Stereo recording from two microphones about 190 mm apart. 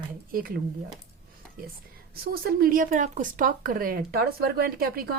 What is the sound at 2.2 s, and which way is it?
Speech, 55° right (ahead or behind).